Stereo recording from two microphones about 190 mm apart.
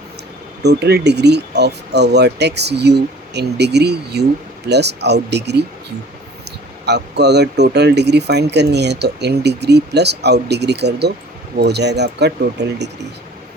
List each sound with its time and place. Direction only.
0.6 s speech: 60° right (ahead or behind)
6.8 s speech: 60° right (ahead or behind)